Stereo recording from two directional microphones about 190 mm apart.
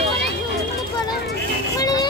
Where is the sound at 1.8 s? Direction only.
20° left (ahead or behind).